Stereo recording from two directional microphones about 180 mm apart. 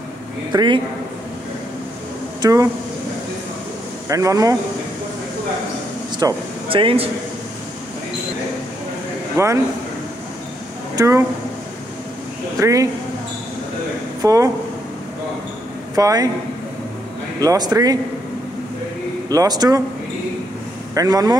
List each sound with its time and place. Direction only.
0.5 s speech: 25° right (ahead or behind)
2.4 s speech: 15° right (ahead or behind)
4.1 s speech: 20° right (ahead or behind)
6.1 s speech: 25° right (ahead or behind)
9.4 s speech: 15° right (ahead or behind)
11.0 s speech: 15° right (ahead or behind)
12.5 s speech: 15° right (ahead or behind)
14.2 s speech: 20° right (ahead or behind)
15.9 s speech: 20° right (ahead or behind)
17.4 s speech: 20° right (ahead or behind)
19.2 s speech: 20° right (ahead or behind)
20.9 s speech: 20° right (ahead or behind)